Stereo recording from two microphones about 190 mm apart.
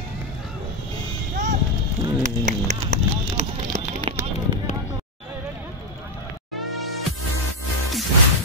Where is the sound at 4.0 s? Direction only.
25° right (ahead or behind).